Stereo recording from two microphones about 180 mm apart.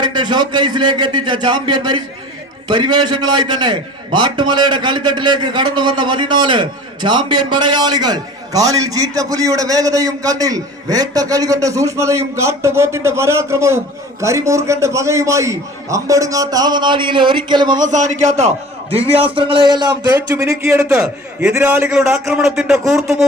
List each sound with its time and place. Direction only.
0.0 s a man's voice: 25° right (ahead or behind)
17.7 s a man's voice: 45° right (ahead or behind); by 21.9 s 15° right (ahead or behind)
21.9 s speech: centre (ahead or behind)